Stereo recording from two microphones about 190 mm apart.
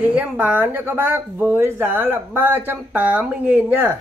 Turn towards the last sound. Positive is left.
turn(degrees=-10)  # may be behind; listen again after turning